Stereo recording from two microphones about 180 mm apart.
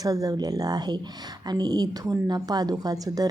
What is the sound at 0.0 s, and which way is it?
A woman's voice, 20° right (ahead or behind).